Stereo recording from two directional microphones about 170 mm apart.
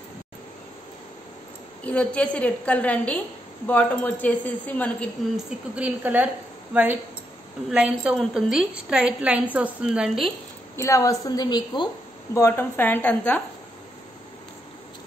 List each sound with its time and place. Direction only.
1.9 s speech: 10° left (ahead or behind)
5.2 s a woman's voice: centre (ahead or behind)
10.8 s a woman's voice: 20° left (ahead or behind)
12.4 s speech: 15° left (ahead or behind)